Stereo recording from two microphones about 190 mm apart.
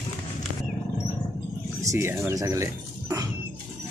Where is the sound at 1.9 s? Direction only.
15° right (ahead or behind).